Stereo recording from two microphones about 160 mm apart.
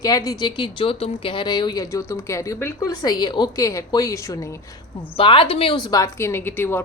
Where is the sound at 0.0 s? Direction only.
25° left (ahead or behind).